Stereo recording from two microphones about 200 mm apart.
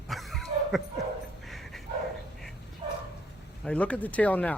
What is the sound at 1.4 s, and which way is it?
Dog, centre (ahead or behind).